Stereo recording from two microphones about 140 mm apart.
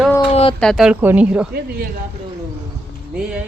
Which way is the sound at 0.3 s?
40° left (ahead or behind).